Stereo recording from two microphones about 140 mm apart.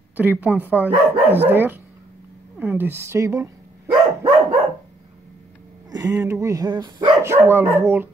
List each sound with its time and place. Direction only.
0.2 s speech: 10° right (ahead or behind)
2.6 s dog: 15° right (ahead or behind)
5.9 s a sound: 25° right (ahead or behind)
6.4 s speech: 25° right (ahead or behind)
7.2 s speech: 15° right (ahead or behind)